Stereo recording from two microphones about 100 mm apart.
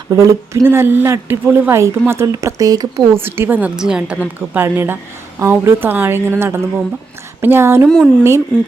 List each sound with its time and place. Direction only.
0.1 s a woman's voice: 30° right (ahead or behind)
3.2 s a woman's voice: 20° right (ahead or behind)
3.8 s speech: 5° right (ahead or behind)
4.4 s a woman's voice: 20° right (ahead or behind)
7.9 s speech: 5° left (ahead or behind)